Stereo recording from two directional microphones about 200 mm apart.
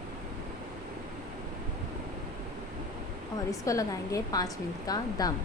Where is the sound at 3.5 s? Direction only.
15° left (ahead or behind).